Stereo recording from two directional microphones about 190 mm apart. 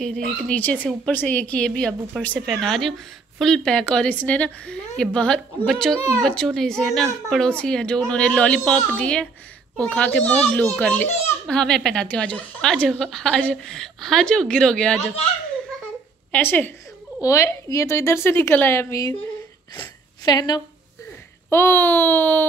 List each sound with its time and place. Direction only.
0.5 s a woman's voice: 10° left (ahead or behind)
16.3 s a woman's voice: 10° left (ahead or behind)
20.2 s a woman's voice: 20° left (ahead or behind)